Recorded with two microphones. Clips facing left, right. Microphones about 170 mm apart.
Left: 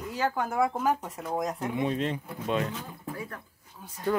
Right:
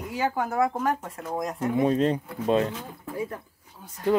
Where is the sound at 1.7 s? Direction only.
40° right (ahead or behind).